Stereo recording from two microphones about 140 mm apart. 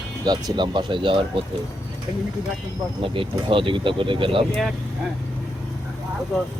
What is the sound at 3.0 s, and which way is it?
Speech, 40° right (ahead or behind).